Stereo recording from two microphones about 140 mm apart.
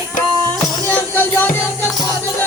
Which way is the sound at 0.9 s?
10° left (ahead or behind).